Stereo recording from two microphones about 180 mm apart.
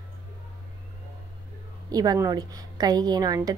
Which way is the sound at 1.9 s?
20° right (ahead or behind).